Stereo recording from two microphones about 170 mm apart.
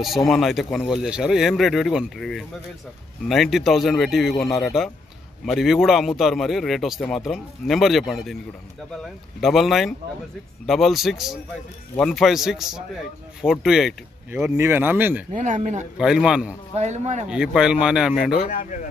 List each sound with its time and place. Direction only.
0.3 s a man's voice: centre (ahead or behind)
14.3 s speech: 15° right (ahead or behind)
15.3 s speech: 45° right (ahead or behind)
16.0 s a man's voice: 5° right (ahead or behind)
16.7 s speech: 40° right (ahead or behind)
17.3 s a man's voice: 5° right (ahead or behind)
18.6 s speech: 50° left (ahead or behind)